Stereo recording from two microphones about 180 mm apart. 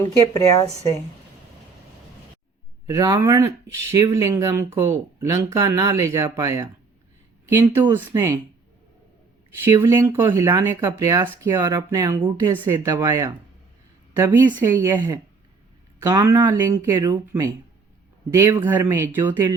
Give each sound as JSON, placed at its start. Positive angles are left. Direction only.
{"t": 0.0, "sound": "speech", "side_deg": 15}
{"t": 2.8, "sound": "speech", "side_deg": -20}
{"t": 9.8, "sound": "speech", "side_deg": -15}